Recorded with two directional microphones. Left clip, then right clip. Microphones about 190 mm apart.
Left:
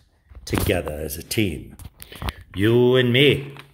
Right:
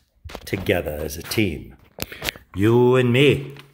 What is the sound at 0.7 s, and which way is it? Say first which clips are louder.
Speech: right 4 dB; centre (ahead or behind).